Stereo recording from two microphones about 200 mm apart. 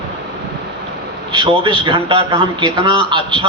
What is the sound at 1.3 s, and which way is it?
A man's voice, 25° right (ahead or behind).